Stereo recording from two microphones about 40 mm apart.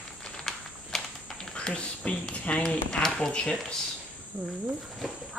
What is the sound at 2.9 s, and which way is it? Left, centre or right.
Speech, centre.